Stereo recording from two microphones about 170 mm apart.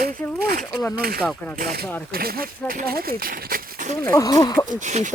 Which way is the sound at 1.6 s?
60° right (ahead or behind).